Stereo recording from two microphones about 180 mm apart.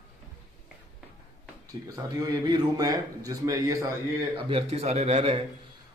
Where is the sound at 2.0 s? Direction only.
20° right (ahead or behind).